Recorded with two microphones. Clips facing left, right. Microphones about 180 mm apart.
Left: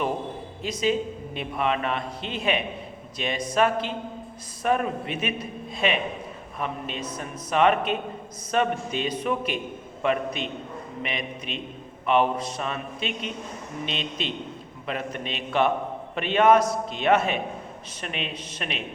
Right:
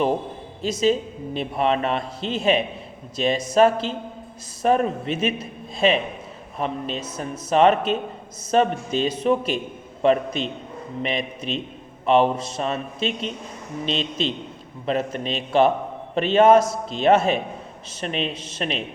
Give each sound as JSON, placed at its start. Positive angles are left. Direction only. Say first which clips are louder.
{"t": 0.6, "sound": "a woman's voice", "louder": "right 4 dB", "side_deg": -30}